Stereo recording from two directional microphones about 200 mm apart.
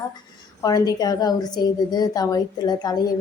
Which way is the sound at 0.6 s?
15° left (ahead or behind).